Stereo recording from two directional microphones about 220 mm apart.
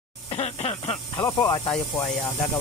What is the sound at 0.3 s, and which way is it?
Snake, 25° left (ahead or behind).